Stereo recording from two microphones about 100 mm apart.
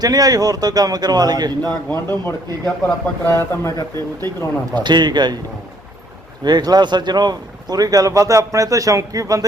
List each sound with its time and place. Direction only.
0.0 s speech: 40° right (ahead or behind)
1.9 s speech: 20° left (ahead or behind)
4.7 s a man's voice: 45° right (ahead or behind)
6.4 s speech: 45° right (ahead or behind)